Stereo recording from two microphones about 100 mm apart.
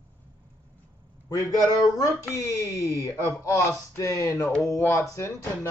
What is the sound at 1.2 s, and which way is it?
Speech, 35° left (ahead or behind).